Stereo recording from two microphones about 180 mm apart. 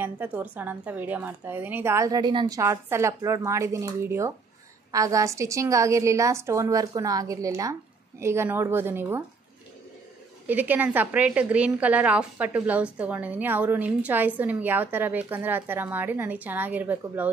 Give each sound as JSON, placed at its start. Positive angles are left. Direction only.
{"t": 0.0, "sound": "a woman's voice", "side_deg": -10}
{"t": 10.4, "sound": "a woman's voice", "side_deg": -10}